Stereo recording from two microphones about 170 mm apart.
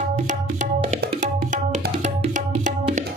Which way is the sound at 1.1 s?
45° right (ahead or behind).